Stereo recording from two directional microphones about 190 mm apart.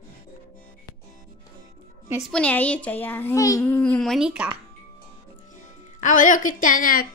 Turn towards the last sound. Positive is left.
turn(degrees=50)  # may be behind; listen again after turning